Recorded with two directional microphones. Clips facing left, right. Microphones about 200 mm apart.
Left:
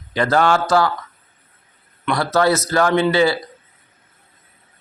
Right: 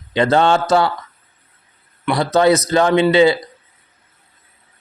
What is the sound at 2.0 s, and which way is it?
Speech, 20° right (ahead or behind).